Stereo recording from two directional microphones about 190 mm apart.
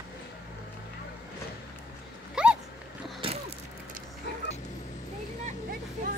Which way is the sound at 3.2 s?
30° right (ahead or behind).